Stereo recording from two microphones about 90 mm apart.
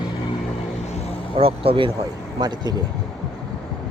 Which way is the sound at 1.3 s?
90° right.